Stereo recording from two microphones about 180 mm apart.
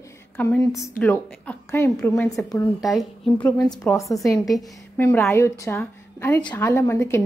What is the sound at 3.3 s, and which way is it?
A woman's voice, 20° left (ahead or behind).